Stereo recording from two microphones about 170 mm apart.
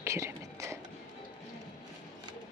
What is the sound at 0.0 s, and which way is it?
Whispering, 15° right (ahead or behind).